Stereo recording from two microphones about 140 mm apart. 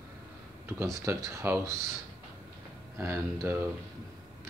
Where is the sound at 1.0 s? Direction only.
20° right (ahead or behind).